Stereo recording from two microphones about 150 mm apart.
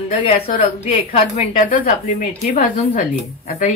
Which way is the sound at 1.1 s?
60° left (ahead or behind).